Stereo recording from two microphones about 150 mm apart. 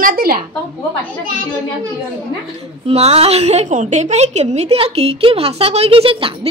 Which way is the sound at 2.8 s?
45° right (ahead or behind).